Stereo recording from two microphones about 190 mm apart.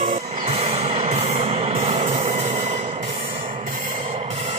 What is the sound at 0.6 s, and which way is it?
Train, 35° right (ahead or behind).